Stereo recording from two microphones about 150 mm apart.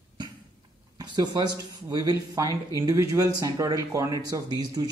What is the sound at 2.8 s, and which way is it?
Speech, 20° right (ahead or behind).